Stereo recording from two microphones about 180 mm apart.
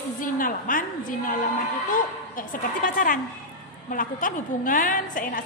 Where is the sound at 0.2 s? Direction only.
50° left (ahead or behind).